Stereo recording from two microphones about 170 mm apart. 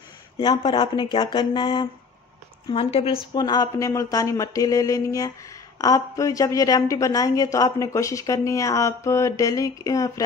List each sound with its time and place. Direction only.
0.4 s a woman's voice: 30° left (ahead or behind)